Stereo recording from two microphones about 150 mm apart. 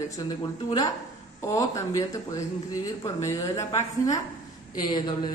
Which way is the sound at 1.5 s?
20° left (ahead or behind).